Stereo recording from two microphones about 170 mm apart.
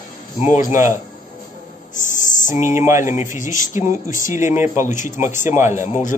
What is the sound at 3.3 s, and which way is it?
Speech, 50° left (ahead or behind).